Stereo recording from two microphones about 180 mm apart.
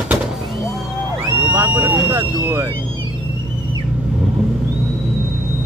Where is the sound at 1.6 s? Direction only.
25° right (ahead or behind).